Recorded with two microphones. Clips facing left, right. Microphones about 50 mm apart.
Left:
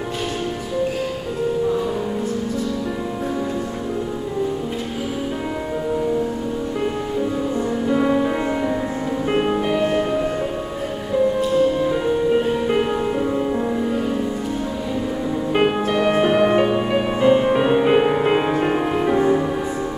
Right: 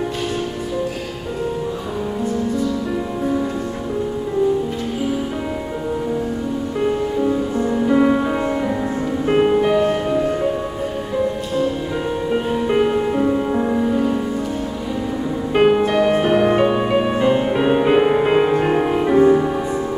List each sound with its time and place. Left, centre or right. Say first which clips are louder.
6.8 s music: right 6 dB; centre
9.3 s music: right 5 dB; centre
12.6 s music: right 2 dB; centre
15.5 s music: right 5 dB; centre